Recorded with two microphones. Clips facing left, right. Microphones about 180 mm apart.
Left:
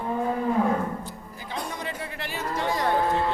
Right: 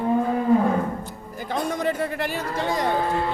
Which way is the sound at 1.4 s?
50° right (ahead or behind).